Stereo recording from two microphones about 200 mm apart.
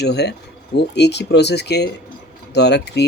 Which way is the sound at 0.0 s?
55° left (ahead or behind).